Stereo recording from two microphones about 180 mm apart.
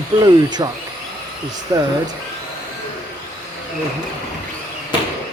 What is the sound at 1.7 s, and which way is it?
Speech, 15° right (ahead or behind).